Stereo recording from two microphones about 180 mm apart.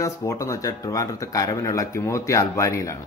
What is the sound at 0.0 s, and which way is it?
Speech, 15° left (ahead or behind).